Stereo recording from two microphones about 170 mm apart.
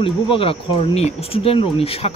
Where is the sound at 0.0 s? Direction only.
30° left (ahead or behind).